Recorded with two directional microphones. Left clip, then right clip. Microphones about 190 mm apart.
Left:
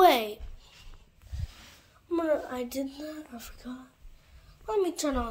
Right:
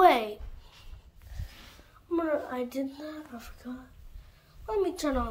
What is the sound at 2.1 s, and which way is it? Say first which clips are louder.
Speech: left 1 dB; 15° left (ahead or behind).